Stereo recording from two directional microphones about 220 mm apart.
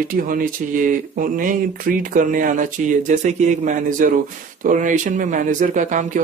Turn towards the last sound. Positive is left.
turn(degrees=-35)  # may be behind; listen again after turning